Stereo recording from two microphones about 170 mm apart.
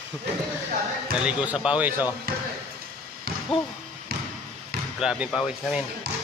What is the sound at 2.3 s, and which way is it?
Speech, 60° right (ahead or behind).